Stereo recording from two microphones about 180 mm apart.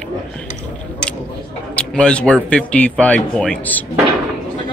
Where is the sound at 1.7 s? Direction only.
5° left (ahead or behind).